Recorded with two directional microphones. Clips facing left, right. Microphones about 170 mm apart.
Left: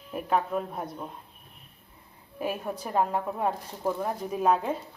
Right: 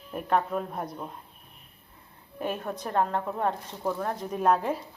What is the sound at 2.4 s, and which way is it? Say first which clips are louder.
A woman's voice: even; 10° left (ahead or behind).